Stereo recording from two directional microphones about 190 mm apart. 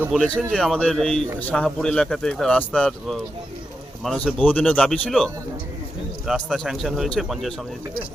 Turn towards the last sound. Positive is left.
turn(degrees=0)  # may be behind; listen again after turning